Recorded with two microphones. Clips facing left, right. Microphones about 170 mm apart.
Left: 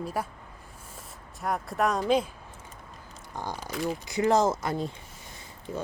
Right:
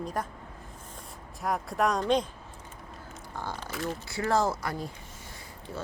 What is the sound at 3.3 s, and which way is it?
Speech, 15° left (ahead or behind).